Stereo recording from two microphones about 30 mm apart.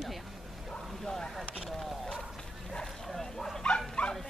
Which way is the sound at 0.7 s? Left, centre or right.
Centre.